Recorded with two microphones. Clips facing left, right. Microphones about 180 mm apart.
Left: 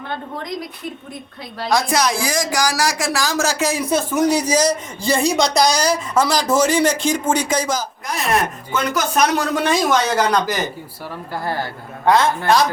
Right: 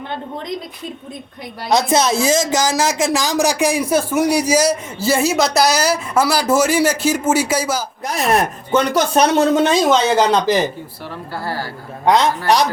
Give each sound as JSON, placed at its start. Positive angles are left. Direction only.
{"t": 1.6, "sound": "speech", "side_deg": -20}
{"t": 8.7, "sound": "speech", "side_deg": -35}
{"t": 11.4, "sound": "a man's voice", "side_deg": 20}
{"t": 12.0, "sound": "speech", "side_deg": -15}